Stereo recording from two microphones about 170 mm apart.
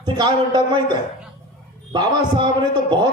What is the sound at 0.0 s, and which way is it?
Speech, 25° right (ahead or behind).